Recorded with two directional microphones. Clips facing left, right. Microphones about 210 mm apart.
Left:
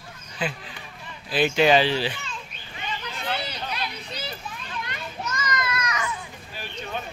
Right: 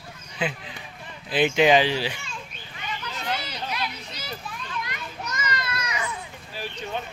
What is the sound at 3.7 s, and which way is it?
Children playing, 30° left (ahead or behind).